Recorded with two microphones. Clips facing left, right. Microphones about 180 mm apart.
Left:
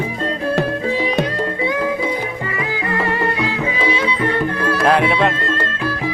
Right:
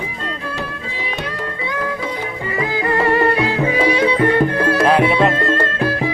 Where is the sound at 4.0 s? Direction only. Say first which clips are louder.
Right 5 dB; 55° right (ahead or behind).